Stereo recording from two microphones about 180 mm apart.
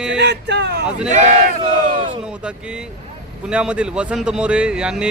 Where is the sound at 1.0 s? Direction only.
40° right (ahead or behind).